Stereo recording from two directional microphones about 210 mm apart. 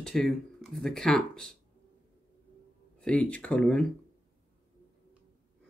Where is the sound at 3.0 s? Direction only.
5° left (ahead or behind).